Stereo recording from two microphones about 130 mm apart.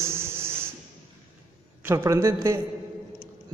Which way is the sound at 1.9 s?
20° right (ahead or behind).